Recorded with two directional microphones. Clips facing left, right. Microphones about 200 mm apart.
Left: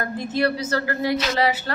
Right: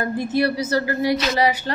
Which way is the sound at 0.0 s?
10° right (ahead or behind).